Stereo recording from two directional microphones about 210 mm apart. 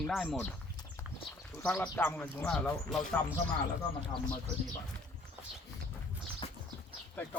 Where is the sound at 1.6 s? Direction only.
10° left (ahead or behind).